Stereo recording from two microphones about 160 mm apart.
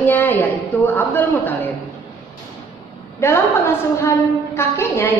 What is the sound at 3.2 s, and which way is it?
A woman's voice, 15° left (ahead or behind).